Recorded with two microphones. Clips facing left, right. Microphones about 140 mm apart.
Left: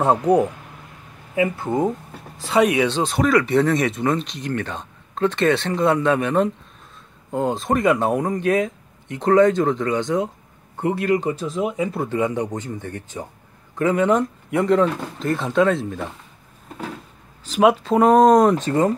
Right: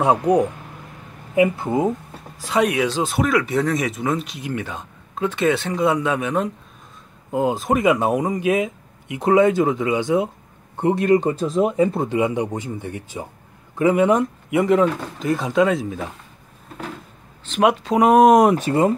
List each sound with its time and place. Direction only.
0.0 s speech: 10° right (ahead or behind)
10.8 s speech: 20° right (ahead or behind)
11.3 s speech: centre (ahead or behind)
11.6 s speech: 45° right (ahead or behind)
11.9 s speech: 20° right (ahead or behind)
14.5 s speech: 5° right (ahead or behind)
17.5 s speech: centre (ahead or behind)
18.0 s speech: 10° right (ahead or behind)